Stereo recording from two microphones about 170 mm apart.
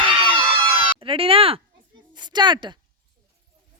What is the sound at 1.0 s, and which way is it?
A woman's voice, 30° right (ahead or behind).